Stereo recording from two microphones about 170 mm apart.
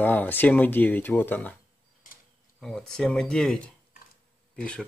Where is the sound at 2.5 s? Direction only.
Centre (ahead or behind).